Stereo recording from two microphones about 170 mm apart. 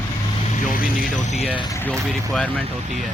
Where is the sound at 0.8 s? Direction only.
45° left (ahead or behind).